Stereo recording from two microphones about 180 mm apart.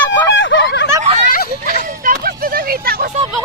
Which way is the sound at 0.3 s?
90° left.